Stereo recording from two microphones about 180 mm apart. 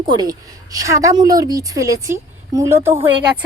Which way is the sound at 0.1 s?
20° right (ahead or behind).